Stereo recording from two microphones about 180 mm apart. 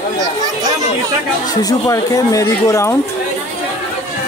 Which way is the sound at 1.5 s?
20° left (ahead or behind).